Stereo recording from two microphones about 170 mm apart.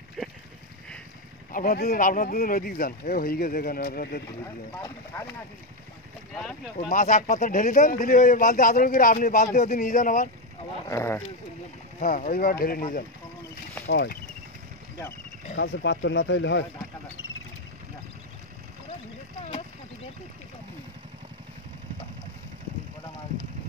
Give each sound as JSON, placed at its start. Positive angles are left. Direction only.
{"t": 1.5, "sound": "speech", "side_deg": 55}
{"t": 6.9, "sound": "speech", "side_deg": 50}
{"t": 10.9, "sound": "speech", "side_deg": 15}
{"t": 12.0, "sound": "speech", "side_deg": 50}
{"t": 13.8, "sound": "speech", "side_deg": 70}
{"t": 15.6, "sound": "speech", "side_deg": 90}